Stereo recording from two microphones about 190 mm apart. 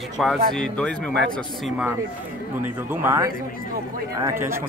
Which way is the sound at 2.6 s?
10° right (ahead or behind).